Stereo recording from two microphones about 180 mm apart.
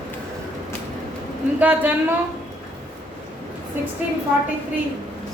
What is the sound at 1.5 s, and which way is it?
Speech, 10° right (ahead or behind).